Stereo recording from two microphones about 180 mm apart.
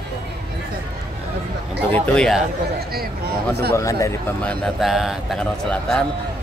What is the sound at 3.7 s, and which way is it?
Speech, 20° left (ahead or behind).